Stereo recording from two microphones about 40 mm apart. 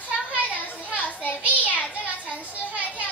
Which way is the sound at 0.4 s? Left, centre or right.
Left.